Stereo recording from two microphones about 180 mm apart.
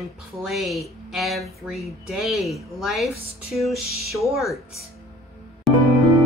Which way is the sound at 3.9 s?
60° right (ahead or behind).